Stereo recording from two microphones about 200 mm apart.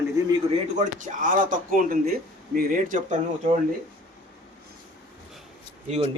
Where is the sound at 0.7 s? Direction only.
40° right (ahead or behind).